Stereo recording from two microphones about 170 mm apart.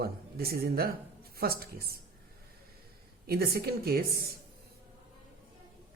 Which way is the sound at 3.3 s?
60° right (ahead or behind).